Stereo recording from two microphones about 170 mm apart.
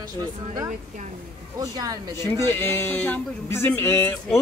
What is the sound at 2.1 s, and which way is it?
Speech, 15° left (ahead or behind).